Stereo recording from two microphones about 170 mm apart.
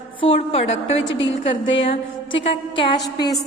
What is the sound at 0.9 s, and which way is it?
Speech, 90° left.